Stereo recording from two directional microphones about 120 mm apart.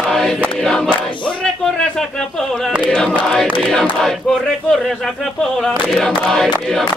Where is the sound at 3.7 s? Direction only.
5° left (ahead or behind).